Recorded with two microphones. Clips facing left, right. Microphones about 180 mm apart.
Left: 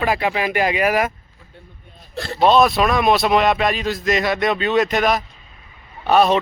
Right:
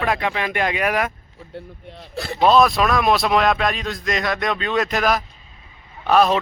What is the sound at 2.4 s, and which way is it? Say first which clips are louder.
A man's voice: left 1 dB; centre (ahead or behind).